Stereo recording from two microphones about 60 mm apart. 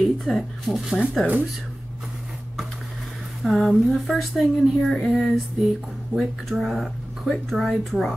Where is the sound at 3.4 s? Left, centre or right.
Centre.